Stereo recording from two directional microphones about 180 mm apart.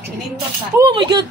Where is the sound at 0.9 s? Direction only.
25° right (ahead or behind).